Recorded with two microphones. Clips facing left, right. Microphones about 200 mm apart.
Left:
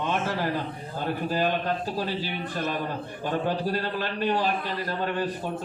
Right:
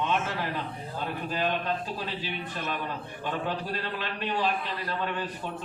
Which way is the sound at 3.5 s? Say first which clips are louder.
Left 5 dB; 40° left (ahead or behind).